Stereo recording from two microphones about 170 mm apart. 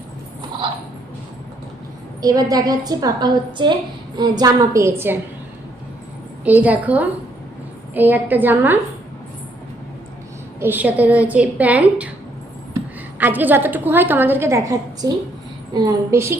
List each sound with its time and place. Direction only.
2.2 s a woman's voice: 20° right (ahead or behind)
6.4 s a woman's voice: 10° right (ahead or behind)
10.6 s a woman's voice: 10° right (ahead or behind)
13.1 s a woman's voice: 10° right (ahead or behind)